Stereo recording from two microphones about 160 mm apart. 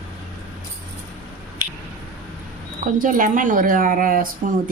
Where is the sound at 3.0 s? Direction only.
55° right (ahead or behind).